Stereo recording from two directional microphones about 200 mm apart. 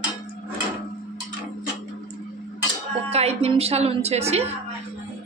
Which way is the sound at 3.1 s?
30° right (ahead or behind).